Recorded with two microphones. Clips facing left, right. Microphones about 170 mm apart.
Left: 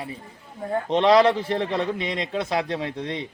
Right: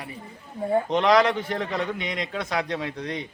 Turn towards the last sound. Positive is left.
turn(degrees=30)  # may be behind; listen again after turning